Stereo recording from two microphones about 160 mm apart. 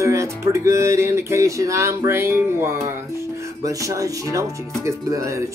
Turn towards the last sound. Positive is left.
turn(degrees=-20)  # may be behind; listen again after turning